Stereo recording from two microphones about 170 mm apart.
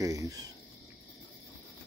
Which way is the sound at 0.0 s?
20° right (ahead or behind).